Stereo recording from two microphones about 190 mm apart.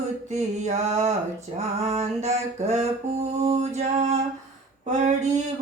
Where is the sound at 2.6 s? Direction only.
35° right (ahead or behind).